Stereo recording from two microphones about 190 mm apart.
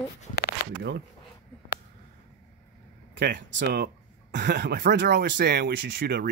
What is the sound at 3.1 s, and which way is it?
Speech, 55° right (ahead or behind).